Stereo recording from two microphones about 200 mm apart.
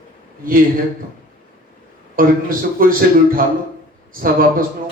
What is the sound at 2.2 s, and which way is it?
Speech, 45° right (ahead or behind).